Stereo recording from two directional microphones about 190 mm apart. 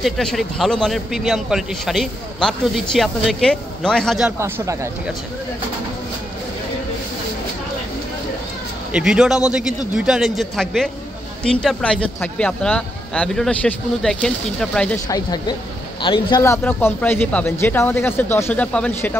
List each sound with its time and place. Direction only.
0.0 s a man's voice: centre (ahead or behind)
4.4 s speech: 15° right (ahead or behind)
8.9 s a man's voice: 5° right (ahead or behind)
15.0 s a man's voice: 20° left (ahead or behind)